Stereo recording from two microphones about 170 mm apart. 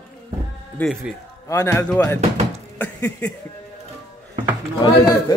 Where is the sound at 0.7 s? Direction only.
5° left (ahead or behind).